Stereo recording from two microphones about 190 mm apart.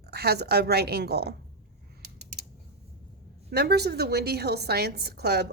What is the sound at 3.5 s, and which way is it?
A woman's voice, 55° right (ahead or behind).